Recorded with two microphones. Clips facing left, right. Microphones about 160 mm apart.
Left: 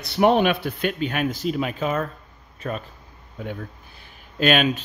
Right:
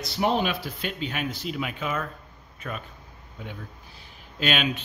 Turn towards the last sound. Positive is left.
turn(degrees=50)  # may be behind; listen again after turning